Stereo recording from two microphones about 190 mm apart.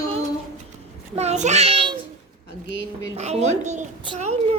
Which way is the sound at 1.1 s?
35° right (ahead or behind).